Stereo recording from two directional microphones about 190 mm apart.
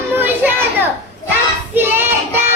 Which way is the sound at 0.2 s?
10° right (ahead or behind).